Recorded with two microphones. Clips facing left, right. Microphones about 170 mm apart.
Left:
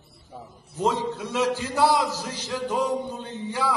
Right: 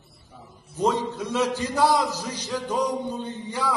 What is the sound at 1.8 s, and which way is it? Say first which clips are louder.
Speech: even; 15° right (ahead or behind).